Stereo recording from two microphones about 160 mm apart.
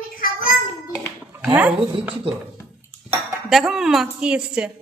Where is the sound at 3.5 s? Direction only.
Centre (ahead or behind).